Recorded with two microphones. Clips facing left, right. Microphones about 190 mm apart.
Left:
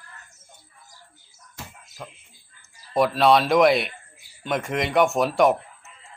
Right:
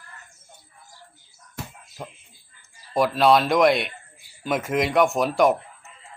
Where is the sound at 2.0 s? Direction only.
15° right (ahead or behind).